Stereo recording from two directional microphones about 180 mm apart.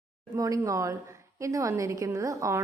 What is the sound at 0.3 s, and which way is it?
A woman's voice, 20° right (ahead or behind).